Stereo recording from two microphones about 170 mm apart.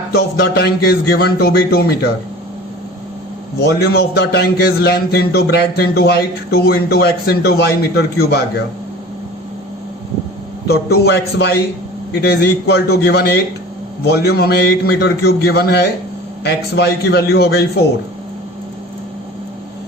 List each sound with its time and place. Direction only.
0.1 s a man's voice: 65° left (ahead or behind)
3.6 s a man's voice: 70° left (ahead or behind)
10.7 s a man's voice: 70° left (ahead or behind)